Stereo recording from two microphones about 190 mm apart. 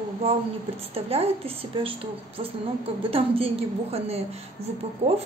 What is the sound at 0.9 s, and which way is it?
A woman's voice, 30° right (ahead or behind).